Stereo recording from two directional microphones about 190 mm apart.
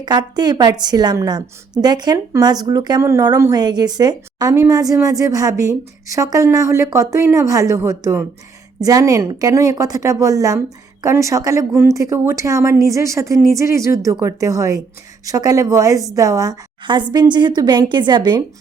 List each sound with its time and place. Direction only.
0.0 s a woman's voice: 20° right (ahead or behind)